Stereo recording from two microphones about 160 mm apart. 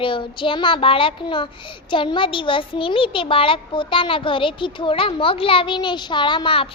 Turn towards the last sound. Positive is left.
turn(degrees=35)  # may be behind; listen again after turning